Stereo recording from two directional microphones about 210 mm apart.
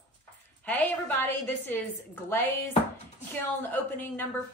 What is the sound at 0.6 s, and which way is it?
A woman's voice, 10° left (ahead or behind).